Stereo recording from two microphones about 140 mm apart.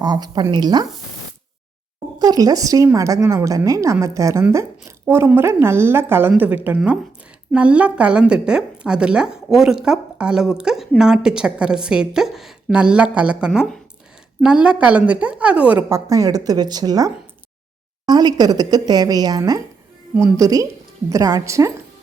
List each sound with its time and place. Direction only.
0.0 s a woman's voice: 30° right (ahead or behind)
2.1 s a woman's voice: 30° right (ahead or behind); by 16.0 s 10° right (ahead or behind)
16.0 s a woman's voice: 25° right (ahead or behind)